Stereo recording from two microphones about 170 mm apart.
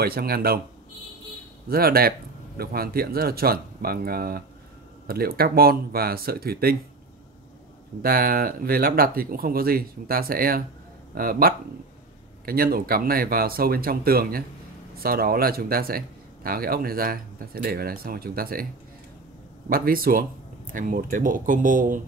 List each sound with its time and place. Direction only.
0.0 s speech: 65° right (ahead or behind)
1.7 s speech: 60° right (ahead or behind)
8.0 s speech: 60° right (ahead or behind)
19.7 s speech: 60° right (ahead or behind)